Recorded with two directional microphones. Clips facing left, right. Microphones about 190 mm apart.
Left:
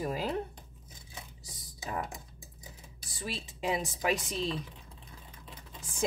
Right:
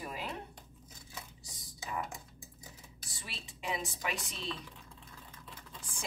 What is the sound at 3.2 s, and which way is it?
A woman's voice, 40° left (ahead or behind).